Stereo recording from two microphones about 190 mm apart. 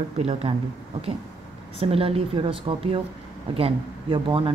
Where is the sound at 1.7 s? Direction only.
30° right (ahead or behind).